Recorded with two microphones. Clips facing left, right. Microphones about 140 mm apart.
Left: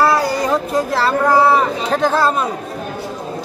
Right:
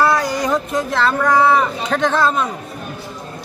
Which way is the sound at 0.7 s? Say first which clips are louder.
Left 2 dB; 35° left (ahead or behind).